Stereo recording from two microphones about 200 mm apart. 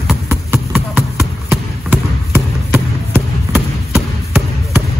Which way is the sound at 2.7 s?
10° right (ahead or behind).